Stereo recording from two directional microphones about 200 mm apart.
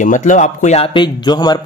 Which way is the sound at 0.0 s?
40° left (ahead or behind).